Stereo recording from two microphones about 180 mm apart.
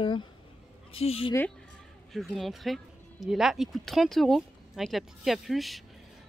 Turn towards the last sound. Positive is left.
turn(degrees=0)  # may be behind; listen again after turning